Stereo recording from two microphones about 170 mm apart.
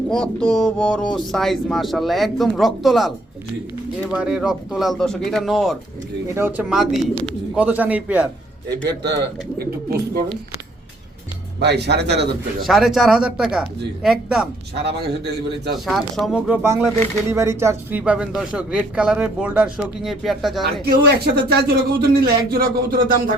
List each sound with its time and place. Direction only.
0.1 s speech: 5° left (ahead or behind)
4.1 s speech: 5° right (ahead or behind)
6.2 s speech: 15° right (ahead or behind)
8.8 s speech: 80° right
11.6 s speech: 80° right
12.6 s speech: centre (ahead or behind)
14.8 s speech: 75° right (ahead or behind)
15.7 s speech: centre (ahead or behind)
16.6 s speech: 15° right (ahead or behind); by 20.8 s centre (ahead or behind)
20.8 s speech: 65° right (ahead or behind)
22.5 s a sound: 60° right (ahead or behind)